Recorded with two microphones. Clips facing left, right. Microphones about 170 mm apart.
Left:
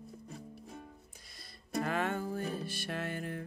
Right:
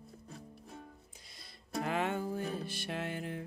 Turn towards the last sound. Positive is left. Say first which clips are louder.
# even
turn(degrees=-15)  # may be behind; listen again after turning